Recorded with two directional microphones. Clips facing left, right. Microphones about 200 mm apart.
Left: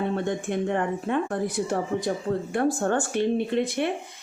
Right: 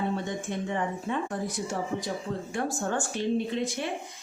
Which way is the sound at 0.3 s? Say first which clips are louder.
Left 6 dB; 60° left (ahead or behind).